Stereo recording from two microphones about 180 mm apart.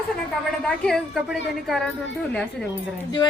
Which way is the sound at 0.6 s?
Centre (ahead or behind).